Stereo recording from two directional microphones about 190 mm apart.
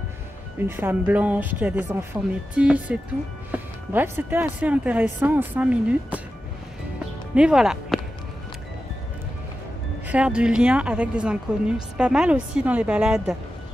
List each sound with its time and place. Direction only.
0.7 s speech: 10° right (ahead or behind)
7.3 s speech: 5° right (ahead or behind)
10.0 s speech: 5° right (ahead or behind)